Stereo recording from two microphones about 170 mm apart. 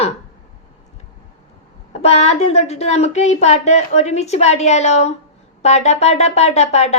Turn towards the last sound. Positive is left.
turn(degrees=40)  # may be behind; listen again after turning